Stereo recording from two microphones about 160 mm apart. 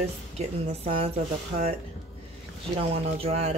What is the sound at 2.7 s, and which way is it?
Speech, 35° right (ahead or behind).